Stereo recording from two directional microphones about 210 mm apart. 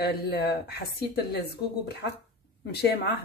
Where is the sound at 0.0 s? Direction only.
50° left (ahead or behind).